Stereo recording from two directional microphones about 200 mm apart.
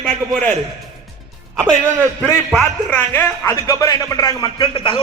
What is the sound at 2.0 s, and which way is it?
Speech, 10° right (ahead or behind).